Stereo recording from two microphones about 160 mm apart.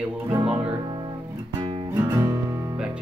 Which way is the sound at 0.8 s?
25° right (ahead or behind).